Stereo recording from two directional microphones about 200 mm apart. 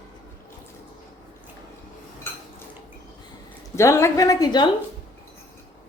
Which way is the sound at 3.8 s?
15° left (ahead or behind).